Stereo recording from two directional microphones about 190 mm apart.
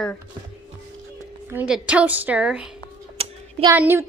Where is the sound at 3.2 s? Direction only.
30° right (ahead or behind).